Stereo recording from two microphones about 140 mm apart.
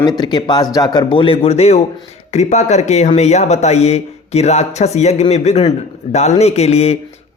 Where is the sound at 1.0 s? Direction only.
40° left (ahead or behind).